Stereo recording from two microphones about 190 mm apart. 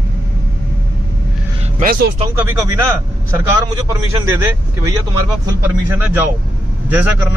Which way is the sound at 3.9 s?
15° right (ahead or behind).